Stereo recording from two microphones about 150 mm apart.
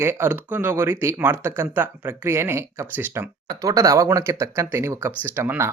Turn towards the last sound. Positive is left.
turn(degrees=-15)  # may be behind; listen again after turning